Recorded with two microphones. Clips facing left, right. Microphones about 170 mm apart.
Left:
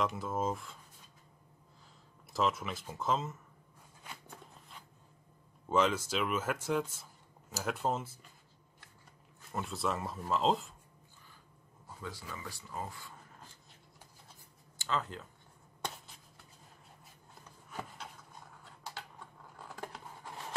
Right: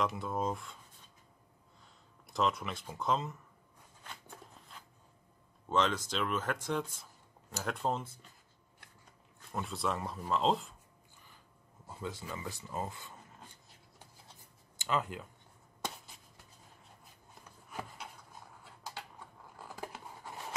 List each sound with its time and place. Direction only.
0.0 s speech: centre (ahead or behind)
2.3 s speech: centre (ahead or behind)
5.7 s speech: 10° left (ahead or behind)
9.5 s speech: centre (ahead or behind)
12.0 s speech: 20° right (ahead or behind)
14.8 s speech: 15° right (ahead or behind)
17.6 s a sound: 5° right (ahead or behind)